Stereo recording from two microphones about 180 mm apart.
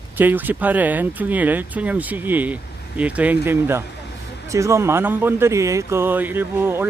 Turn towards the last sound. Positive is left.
turn(degrees=-10)  # may be behind; listen again after turning